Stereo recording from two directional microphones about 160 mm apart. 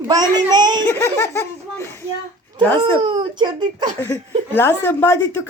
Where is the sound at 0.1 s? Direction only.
25° right (ahead or behind).